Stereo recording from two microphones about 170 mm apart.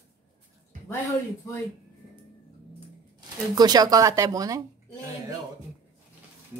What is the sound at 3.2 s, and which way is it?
Speech, 25° right (ahead or behind).